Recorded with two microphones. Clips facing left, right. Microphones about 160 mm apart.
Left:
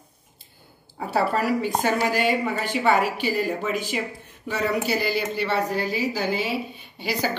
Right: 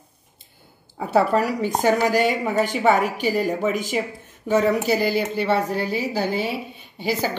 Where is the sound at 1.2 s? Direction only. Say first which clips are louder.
Right 3 dB; 45° right (ahead or behind).